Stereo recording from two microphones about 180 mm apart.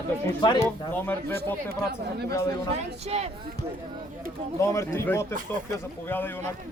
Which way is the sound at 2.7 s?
35° right (ahead or behind).